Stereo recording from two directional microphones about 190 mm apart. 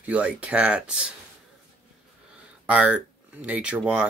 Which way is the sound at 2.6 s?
5° right (ahead or behind).